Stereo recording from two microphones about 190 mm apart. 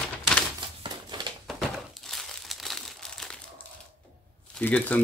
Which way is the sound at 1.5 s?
Centre (ahead or behind).